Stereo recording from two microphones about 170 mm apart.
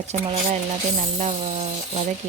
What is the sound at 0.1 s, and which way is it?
Speech, 40° right (ahead or behind).